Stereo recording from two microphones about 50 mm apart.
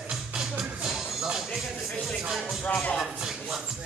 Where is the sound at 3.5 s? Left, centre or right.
Centre.